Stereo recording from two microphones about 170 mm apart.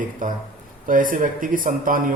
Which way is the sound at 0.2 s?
50° right (ahead or behind).